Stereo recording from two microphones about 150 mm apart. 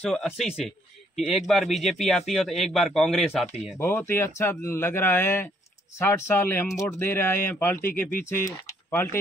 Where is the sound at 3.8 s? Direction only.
15° left (ahead or behind).